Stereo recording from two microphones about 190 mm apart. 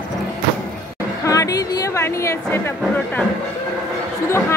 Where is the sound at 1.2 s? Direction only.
20° left (ahead or behind).